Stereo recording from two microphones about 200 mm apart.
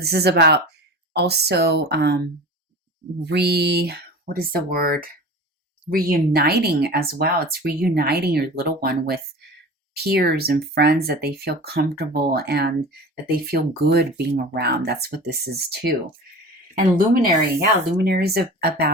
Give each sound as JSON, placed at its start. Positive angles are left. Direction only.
{"t": 0.0, "sound": "speech", "side_deg": -55}
{"t": 17.6, "sound": "speech", "side_deg": -50}